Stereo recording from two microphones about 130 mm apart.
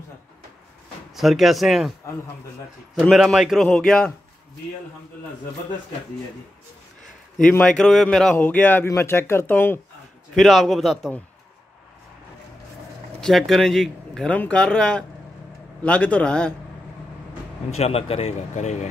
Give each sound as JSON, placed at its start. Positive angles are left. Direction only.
{"t": 1.1, "sound": "speech", "side_deg": 0}
{"t": 3.1, "sound": "speech", "side_deg": 0}
{"t": 7.3, "sound": "speech", "side_deg": 10}
{"t": 8.4, "sound": "speech", "side_deg": 15}
{"t": 10.3, "sound": "speech", "side_deg": 0}
{"t": 13.2, "sound": "speech", "side_deg": 0}
{"t": 17.7, "sound": "speech", "side_deg": 50}